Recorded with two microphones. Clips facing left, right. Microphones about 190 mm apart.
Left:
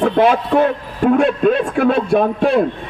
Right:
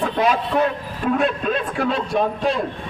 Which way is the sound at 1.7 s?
55° left (ahead or behind).